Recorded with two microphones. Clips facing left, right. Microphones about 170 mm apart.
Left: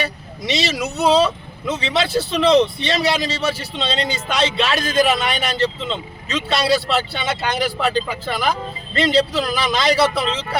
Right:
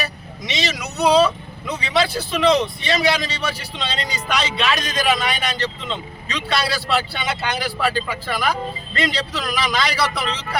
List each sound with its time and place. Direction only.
0.0 s speech: 30° left (ahead or behind)
2.4 s speech: centre (ahead or behind)
2.8 s speech: 25° left (ahead or behind)
5.0 s speech: centre (ahead or behind)
5.4 s speech: 30° left (ahead or behind)